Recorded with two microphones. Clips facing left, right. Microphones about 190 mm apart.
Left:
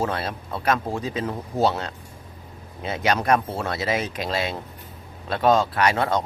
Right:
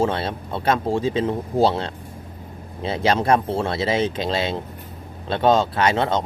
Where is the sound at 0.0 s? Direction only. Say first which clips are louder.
Right 4 dB; 25° right (ahead or behind).